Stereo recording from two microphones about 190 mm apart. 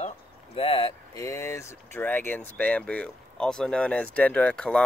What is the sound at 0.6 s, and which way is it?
Speech, 30° left (ahead or behind).